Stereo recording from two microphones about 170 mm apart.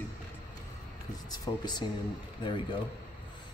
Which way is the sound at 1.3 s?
25° left (ahead or behind).